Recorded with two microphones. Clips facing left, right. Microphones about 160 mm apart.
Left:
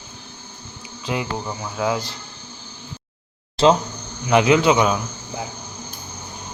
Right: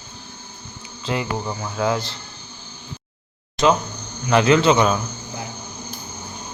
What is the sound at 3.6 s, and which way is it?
Speech, 30° left (ahead or behind).